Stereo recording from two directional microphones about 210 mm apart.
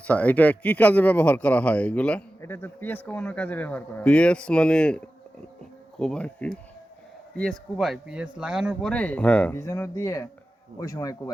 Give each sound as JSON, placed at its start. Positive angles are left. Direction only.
{"t": 0.1, "sound": "speech", "side_deg": 5}